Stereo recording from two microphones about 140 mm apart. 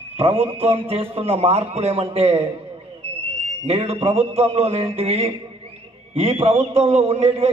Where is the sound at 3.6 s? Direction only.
45° right (ahead or behind).